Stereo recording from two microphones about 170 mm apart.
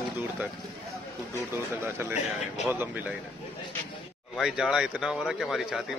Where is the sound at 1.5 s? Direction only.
15° right (ahead or behind).